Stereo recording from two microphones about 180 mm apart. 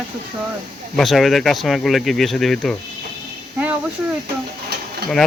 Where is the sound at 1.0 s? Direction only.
Centre (ahead or behind).